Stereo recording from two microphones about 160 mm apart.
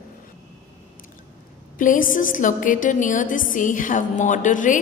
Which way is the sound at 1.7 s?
55° left (ahead or behind).